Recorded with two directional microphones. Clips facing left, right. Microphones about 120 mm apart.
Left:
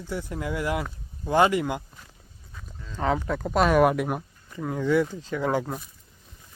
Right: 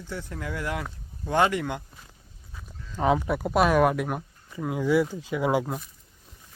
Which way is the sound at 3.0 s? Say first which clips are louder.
Right 2 dB; 15° right (ahead or behind).